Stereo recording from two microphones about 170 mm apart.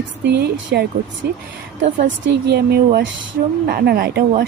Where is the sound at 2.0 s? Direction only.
85° right.